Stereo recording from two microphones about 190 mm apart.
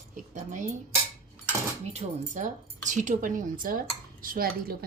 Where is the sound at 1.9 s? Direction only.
40° right (ahead or behind).